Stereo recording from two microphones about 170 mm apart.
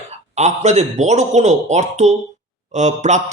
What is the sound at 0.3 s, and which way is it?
A man's voice, 40° right (ahead or behind).